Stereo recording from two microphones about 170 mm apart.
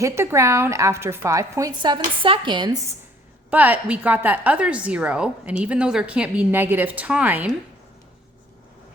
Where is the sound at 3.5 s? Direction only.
10° right (ahead or behind).